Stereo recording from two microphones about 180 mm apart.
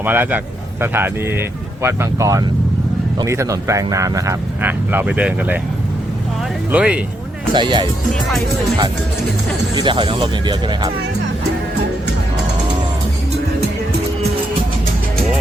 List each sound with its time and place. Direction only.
0.0 s speech: 10° right (ahead or behind)
6.7 s speech: 5° right (ahead or behind)
7.5 s speech: 25° right (ahead or behind)
9.7 s speech: 25° right (ahead or behind)